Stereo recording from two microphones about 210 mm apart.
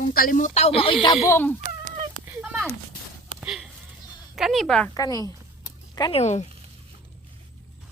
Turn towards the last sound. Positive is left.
turn(degrees=30)  # may be behind; listen again after turning